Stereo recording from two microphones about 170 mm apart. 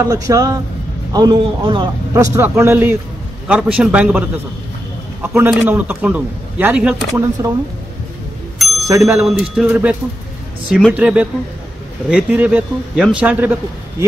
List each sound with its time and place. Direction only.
0.0 s a man's voice: 20° right (ahead or behind)
8.5 s bicycle bell: centre (ahead or behind)
9.1 s a man's voice: centre (ahead or behind)